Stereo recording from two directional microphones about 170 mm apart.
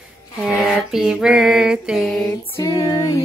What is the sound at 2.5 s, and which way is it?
Female singing, 20° left (ahead or behind).